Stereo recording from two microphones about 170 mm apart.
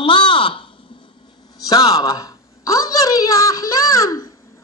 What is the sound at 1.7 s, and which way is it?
A man's voice, 20° left (ahead or behind).